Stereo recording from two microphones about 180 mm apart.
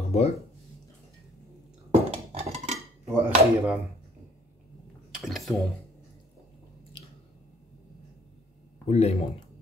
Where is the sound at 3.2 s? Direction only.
10° right (ahead or behind).